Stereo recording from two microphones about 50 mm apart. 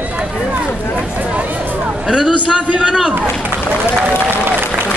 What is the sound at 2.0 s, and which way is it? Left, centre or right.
Speech, centre.